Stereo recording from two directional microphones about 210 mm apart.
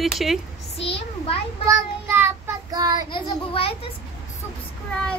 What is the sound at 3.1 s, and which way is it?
Speech, 25° left (ahead or behind).